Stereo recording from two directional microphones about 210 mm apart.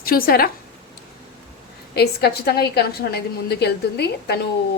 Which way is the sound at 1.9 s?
50° left (ahead or behind).